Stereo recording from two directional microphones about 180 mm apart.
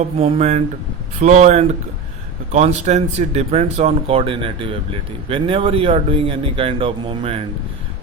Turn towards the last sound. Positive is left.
turn(degrees=-30)  # may be behind; listen again after turning